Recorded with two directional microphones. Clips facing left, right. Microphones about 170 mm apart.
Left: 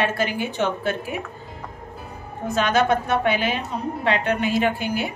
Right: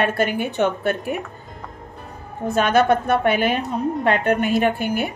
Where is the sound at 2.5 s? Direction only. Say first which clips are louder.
Right 3 dB; 55° right (ahead or behind).